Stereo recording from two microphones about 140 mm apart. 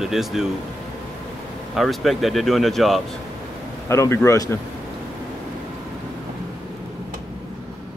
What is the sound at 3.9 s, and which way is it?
Speech, 15° left (ahead or behind).